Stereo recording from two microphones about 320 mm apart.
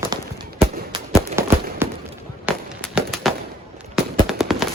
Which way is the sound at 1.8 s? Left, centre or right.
Centre.